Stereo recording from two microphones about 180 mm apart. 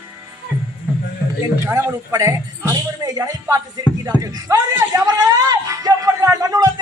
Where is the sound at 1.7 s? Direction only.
15° right (ahead or behind).